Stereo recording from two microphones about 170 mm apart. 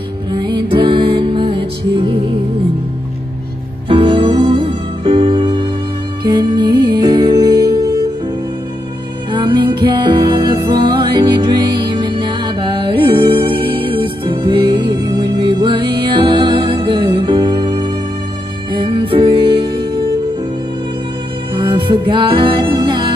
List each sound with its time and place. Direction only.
0.3 s music: 25° right (ahead or behind)
3.9 s music: 30° right (ahead or behind)
9.3 s music: 30° right (ahead or behind)
21.5 s music: 30° right (ahead or behind)